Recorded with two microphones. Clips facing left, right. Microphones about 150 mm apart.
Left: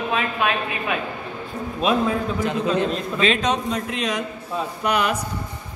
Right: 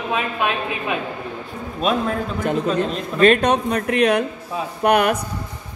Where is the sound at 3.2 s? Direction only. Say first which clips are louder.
Right 7 dB; 55° right (ahead or behind).